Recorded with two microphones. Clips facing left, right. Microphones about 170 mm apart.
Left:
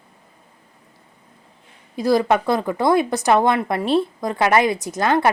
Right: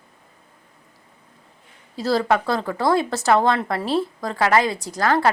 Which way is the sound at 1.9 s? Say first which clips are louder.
Left 3 dB; 15° left (ahead or behind).